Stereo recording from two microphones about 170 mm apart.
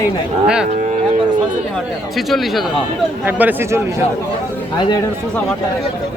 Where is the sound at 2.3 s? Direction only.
Centre (ahead or behind).